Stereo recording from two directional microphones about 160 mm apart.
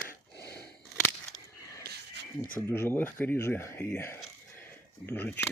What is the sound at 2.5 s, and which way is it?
Speech, 15° left (ahead or behind).